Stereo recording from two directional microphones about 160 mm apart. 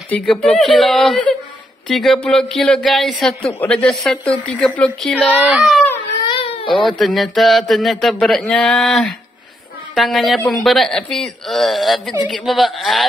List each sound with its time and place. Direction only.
0.1 s a woman's voice: 5° left (ahead or behind)
5.3 s speech: 5° right (ahead or behind)
6.2 s baby cry: 35° left (ahead or behind)
6.9 s speech: centre (ahead or behind)